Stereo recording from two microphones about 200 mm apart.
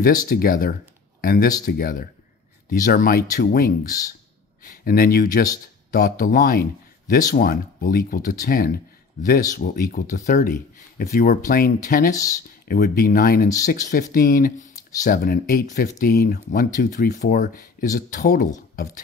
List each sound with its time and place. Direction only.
0.0 s speech: 50° left (ahead or behind)